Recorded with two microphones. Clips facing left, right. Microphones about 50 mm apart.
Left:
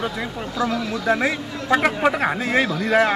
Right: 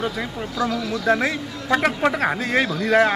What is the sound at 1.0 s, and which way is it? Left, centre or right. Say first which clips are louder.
A man's voice: right 1 dB; centre.